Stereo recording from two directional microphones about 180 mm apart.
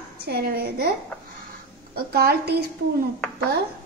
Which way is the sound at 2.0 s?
60° right (ahead or behind).